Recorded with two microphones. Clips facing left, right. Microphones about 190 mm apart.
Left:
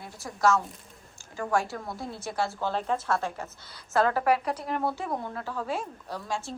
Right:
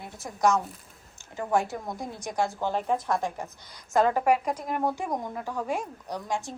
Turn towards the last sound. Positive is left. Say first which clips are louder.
# right 2 dB
turn(degrees=-15)  # may be behind; listen again after turning